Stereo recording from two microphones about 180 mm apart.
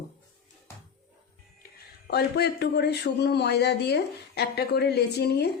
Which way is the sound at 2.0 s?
65° left (ahead or behind).